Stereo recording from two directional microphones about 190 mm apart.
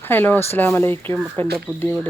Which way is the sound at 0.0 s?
10° left (ahead or behind).